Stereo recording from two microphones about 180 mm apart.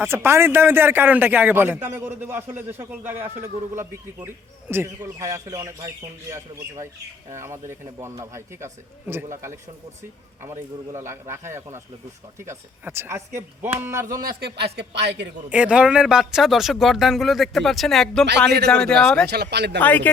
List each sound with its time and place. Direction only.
0.0 s a man's voice: 15° right (ahead or behind)
7.3 s a man's voice: 15° right (ahead or behind)
14.2 s a man's voice: 55° right (ahead or behind)
15.4 s speech: 5° right (ahead or behind)
19.3 s a man's voice: 65° right (ahead or behind)
19.8 s speech: 10° left (ahead or behind)